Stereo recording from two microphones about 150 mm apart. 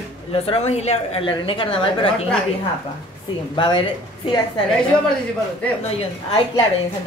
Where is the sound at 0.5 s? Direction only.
45° left (ahead or behind).